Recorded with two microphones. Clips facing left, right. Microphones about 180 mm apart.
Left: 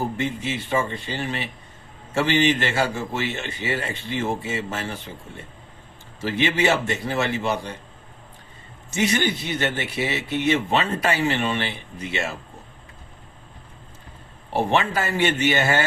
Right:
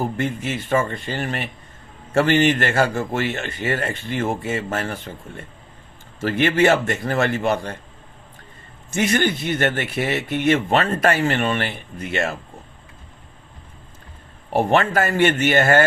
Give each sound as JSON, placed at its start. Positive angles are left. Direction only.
{"t": 0.2, "sound": "speech", "side_deg": -50}
{"t": 6.1, "sound": "speech", "side_deg": -50}
{"t": 8.9, "sound": "speech", "side_deg": -50}
{"t": 14.5, "sound": "speech", "side_deg": -50}